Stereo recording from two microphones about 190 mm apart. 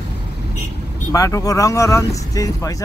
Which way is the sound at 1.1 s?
15° left (ahead or behind).